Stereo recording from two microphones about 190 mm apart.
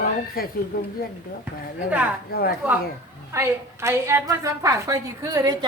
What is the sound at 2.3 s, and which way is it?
Speech, 50° left (ahead or behind).